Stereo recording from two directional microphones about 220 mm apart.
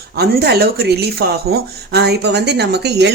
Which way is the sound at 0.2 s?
45° right (ahead or behind).